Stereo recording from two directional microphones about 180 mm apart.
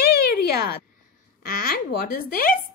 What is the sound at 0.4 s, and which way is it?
A woman's voice, 55° left (ahead or behind).